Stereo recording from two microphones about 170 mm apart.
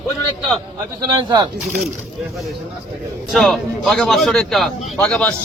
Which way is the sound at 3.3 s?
5° left (ahead or behind).